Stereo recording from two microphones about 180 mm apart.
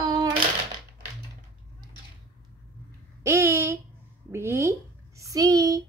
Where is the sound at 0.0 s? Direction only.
20° right (ahead or behind).